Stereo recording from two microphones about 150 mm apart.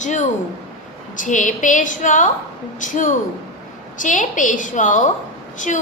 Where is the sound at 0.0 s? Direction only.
55° left (ahead or behind).